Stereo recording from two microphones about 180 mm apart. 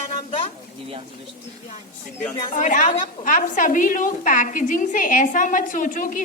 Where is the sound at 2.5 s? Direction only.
45° left (ahead or behind).